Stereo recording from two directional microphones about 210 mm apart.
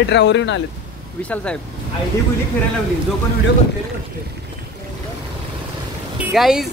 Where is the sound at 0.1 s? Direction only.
55° left (ahead or behind).